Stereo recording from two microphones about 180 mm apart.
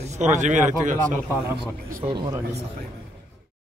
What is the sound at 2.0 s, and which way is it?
Speech, 25° right (ahead or behind).